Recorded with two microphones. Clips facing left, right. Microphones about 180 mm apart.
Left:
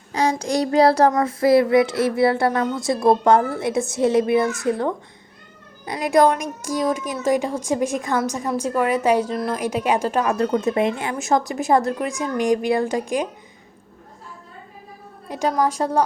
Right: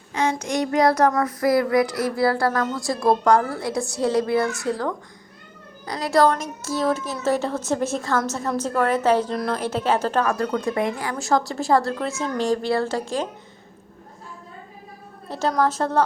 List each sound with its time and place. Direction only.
0.1 s child singing: 35° left (ahead or behind)
5.8 s a woman's voice: 20° left (ahead or behind)
10.3 s child singing: 25° left (ahead or behind)
15.3 s a woman's voice: 15° left (ahead or behind)